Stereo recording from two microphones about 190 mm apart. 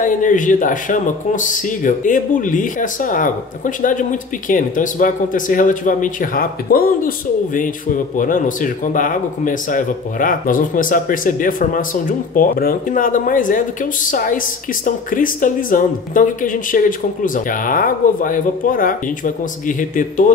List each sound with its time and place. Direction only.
0.0 s speech: 45° left (ahead or behind)